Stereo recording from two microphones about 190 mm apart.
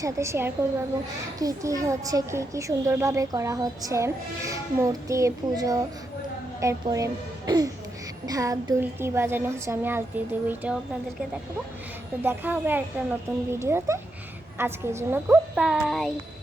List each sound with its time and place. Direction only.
0.0 s a woman's voice: 15° right (ahead or behind)
12.2 s a woman's voice: 10° right (ahead or behind)